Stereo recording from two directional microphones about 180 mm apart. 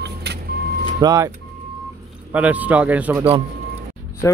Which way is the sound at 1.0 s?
20° right (ahead or behind).